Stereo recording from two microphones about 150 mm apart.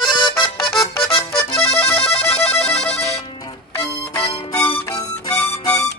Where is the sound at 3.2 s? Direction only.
20° left (ahead or behind).